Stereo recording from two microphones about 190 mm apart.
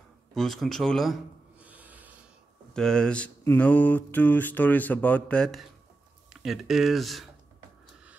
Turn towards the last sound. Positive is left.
turn(degrees=0)  # may be behind; listen again after turning